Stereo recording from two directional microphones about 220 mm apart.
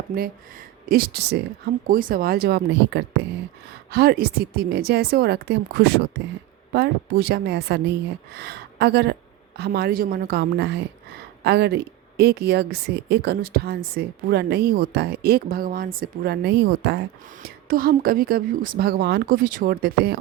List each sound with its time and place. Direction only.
0.9 s speech: 45° right (ahead or behind)